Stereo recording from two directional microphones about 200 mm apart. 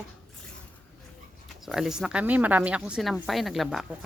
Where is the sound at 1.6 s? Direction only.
Centre (ahead or behind).